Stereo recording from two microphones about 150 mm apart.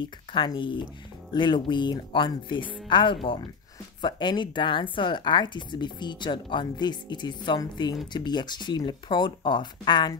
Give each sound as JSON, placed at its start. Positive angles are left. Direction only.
{"t": 0.0, "sound": "a woman's voice", "side_deg": 30}